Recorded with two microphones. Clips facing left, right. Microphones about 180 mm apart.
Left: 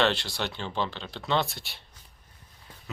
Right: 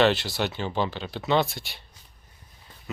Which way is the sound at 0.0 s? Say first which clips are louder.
Right 5 dB; 5° right (ahead or behind).